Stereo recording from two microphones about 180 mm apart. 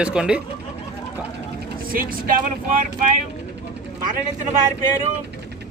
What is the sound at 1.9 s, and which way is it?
Speech, 50° right (ahead or behind).